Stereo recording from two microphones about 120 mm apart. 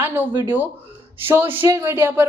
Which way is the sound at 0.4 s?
15° right (ahead or behind).